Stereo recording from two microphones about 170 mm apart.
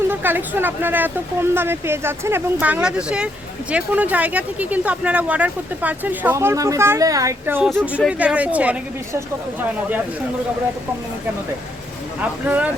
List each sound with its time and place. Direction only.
0.1 s speech: 10° right (ahead or behind)
12.2 s speech: 10° right (ahead or behind)